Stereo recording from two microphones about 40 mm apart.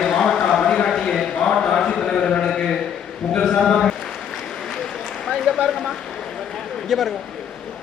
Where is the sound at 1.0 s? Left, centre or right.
Centre.